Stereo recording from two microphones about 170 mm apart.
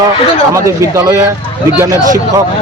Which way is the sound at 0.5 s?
20° right (ahead or behind).